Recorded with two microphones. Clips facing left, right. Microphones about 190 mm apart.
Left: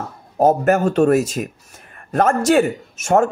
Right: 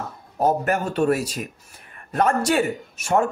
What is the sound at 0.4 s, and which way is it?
A man's voice, 45° left (ahead or behind).